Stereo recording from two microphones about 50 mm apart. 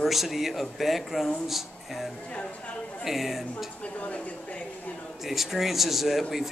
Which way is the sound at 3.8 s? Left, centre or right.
Left.